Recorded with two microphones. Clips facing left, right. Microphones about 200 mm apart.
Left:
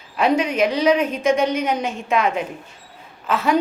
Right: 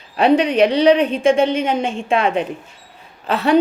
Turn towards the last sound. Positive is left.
turn(degrees=-35)  # may be behind; listen again after turning